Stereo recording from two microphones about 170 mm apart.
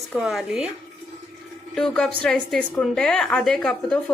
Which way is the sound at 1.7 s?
5° left (ahead or behind).